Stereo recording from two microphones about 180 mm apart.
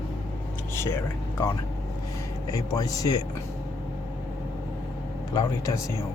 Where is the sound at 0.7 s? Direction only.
15° left (ahead or behind).